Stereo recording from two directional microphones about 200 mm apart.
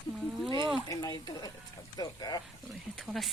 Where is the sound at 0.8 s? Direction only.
20° left (ahead or behind).